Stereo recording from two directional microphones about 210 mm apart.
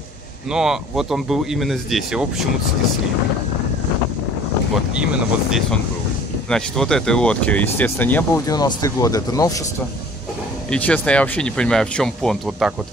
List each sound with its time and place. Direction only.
0.5 s speech: centre (ahead or behind)
4.9 s speech: 5° right (ahead or behind); by 9.6 s 15° left (ahead or behind)
10.7 s speech: 5° left (ahead or behind)